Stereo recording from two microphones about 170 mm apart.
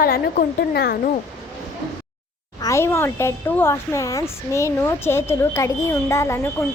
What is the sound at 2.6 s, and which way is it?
Speech, 15° left (ahead or behind).